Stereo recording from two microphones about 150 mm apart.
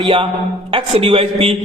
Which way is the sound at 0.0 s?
30° right (ahead or behind).